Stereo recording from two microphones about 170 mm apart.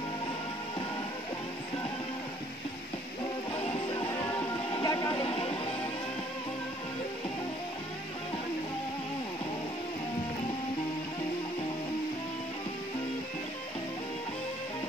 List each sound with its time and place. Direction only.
3.5 s music: 30° left (ahead or behind)